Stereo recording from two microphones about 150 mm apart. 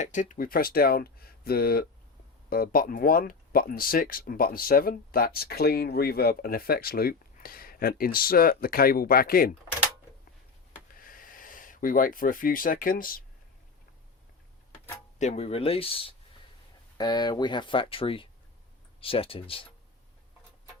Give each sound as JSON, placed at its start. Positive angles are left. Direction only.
{"t": 0.0, "sound": "speech", "side_deg": 55}
{"t": 2.5, "sound": "speech", "side_deg": 75}
{"t": 10.9, "sound": "speech", "side_deg": 70}
{"t": 15.2, "sound": "speech", "side_deg": 45}